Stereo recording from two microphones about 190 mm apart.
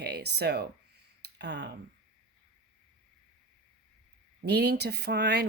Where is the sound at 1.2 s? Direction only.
60° right (ahead or behind).